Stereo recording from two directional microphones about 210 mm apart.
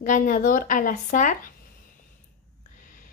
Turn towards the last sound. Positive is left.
turn(degrees=40)  # may be behind; listen again after turning